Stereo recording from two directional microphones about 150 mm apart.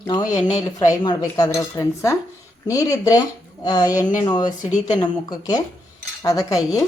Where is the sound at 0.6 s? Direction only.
25° left (ahead or behind).